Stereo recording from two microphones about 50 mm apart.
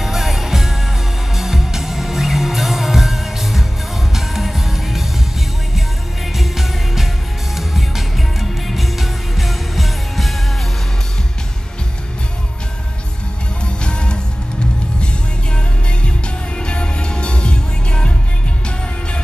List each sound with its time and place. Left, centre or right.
0.0 s music: centre
6.3 s music: centre
13.8 s music: centre
16.5 s music: left